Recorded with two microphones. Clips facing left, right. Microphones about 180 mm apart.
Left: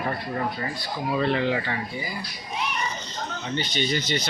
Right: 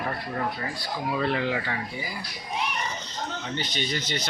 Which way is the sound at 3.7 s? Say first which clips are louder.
Left 6 dB; centre (ahead or behind).